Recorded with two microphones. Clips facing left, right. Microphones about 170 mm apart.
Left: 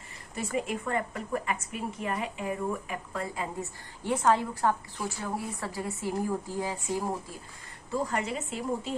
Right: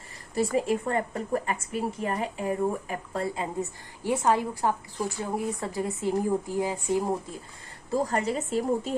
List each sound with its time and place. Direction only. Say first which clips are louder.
0.3 s a woman's voice: right 7 dB; 35° right (ahead or behind)
3.6 s a woman's voice: right 5 dB; 10° right (ahead or behind)
7.9 s a woman's voice: right 4 dB; 40° right (ahead or behind)